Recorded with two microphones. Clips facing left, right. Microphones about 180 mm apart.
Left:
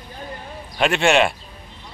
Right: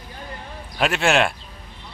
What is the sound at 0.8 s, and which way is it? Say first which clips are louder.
Speech: left 2 dB; centre (ahead or behind).